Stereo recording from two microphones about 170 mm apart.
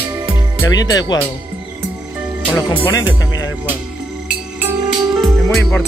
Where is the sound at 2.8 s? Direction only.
20° left (ahead or behind).